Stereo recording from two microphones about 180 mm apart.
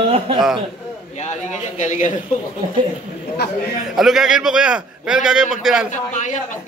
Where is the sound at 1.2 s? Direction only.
40° left (ahead or behind).